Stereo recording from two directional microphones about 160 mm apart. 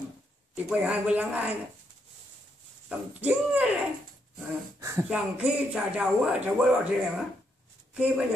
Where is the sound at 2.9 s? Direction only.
10° right (ahead or behind).